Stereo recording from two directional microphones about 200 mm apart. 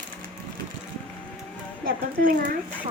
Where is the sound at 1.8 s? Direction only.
45° right (ahead or behind).